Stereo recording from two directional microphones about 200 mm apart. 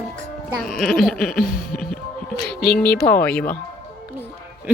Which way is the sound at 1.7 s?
45° left (ahead or behind).